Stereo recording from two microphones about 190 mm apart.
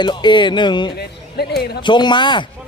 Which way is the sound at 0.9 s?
60° left (ahead or behind).